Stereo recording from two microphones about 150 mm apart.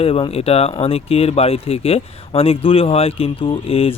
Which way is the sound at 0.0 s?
40° left (ahead or behind).